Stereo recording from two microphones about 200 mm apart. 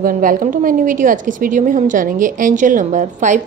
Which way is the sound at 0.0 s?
45° right (ahead or behind).